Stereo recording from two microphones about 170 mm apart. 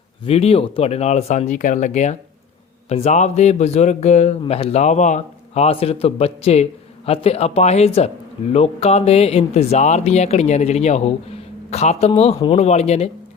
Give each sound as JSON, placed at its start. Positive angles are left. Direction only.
{"t": 0.3, "sound": "speech", "side_deg": 35}